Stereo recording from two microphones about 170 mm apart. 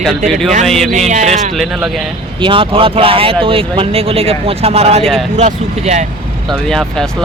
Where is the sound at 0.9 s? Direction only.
45° right (ahead or behind).